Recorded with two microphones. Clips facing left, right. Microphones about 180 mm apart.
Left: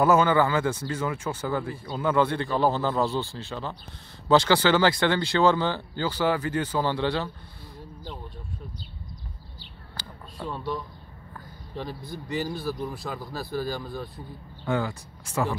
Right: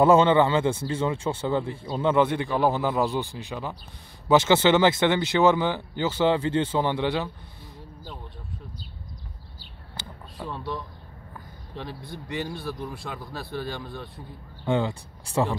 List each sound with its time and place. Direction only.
0.0 s speech: 25° right (ahead or behind)
9.9 s a sound: 15° right (ahead or behind)
11.7 s speech: centre (ahead or behind)
14.7 s speech: 25° right (ahead or behind)